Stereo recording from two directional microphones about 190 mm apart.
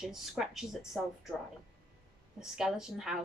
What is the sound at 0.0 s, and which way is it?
Speech, centre (ahead or behind).